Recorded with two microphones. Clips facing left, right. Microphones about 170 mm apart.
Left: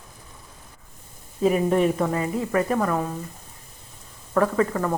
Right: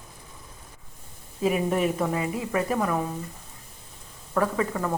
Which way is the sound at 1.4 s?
35° left (ahead or behind).